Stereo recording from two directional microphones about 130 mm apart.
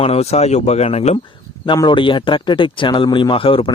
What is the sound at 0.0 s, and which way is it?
Speech, 50° left (ahead or behind).